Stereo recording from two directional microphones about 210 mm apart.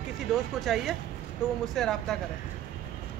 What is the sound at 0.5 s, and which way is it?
A man's voice, centre (ahead or behind).